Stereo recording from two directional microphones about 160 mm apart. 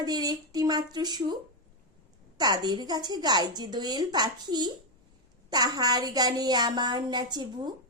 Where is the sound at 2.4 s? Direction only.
25° right (ahead or behind).